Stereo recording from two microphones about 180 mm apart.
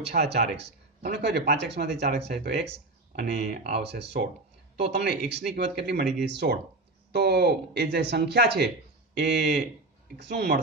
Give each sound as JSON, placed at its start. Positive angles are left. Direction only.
{"t": 0.0, "sound": "speech", "side_deg": -65}